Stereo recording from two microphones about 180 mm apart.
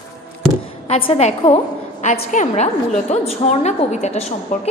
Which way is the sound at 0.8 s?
35° left (ahead or behind).